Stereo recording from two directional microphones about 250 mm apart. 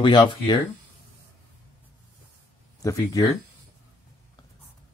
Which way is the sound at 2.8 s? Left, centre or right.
Centre.